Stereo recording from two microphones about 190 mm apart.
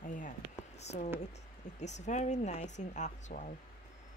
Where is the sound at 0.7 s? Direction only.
35° left (ahead or behind).